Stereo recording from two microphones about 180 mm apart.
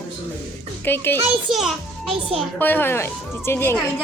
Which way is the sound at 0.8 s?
10° left (ahead or behind).